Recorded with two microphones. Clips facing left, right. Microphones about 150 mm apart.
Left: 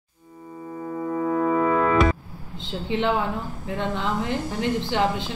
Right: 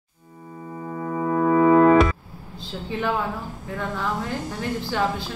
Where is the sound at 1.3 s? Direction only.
50° right (ahead or behind).